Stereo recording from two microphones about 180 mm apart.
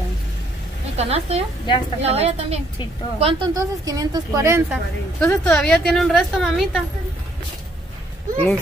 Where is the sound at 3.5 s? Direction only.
20° right (ahead or behind).